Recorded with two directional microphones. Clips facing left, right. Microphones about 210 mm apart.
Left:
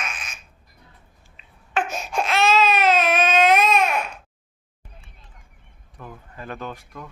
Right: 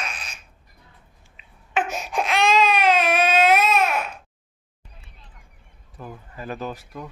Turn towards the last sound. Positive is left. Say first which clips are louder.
# right 3 dB
turn(degrees=-5)  # may be behind; listen again after turning